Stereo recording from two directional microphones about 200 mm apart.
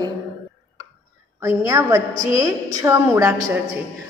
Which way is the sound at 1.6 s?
15° right (ahead or behind).